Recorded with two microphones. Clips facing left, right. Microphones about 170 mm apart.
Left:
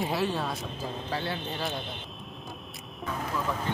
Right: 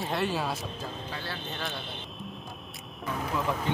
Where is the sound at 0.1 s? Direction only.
Centre (ahead or behind).